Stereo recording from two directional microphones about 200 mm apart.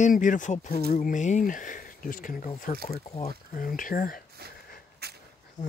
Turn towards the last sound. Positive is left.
turn(degrees=-55)  # may be behind; listen again after turning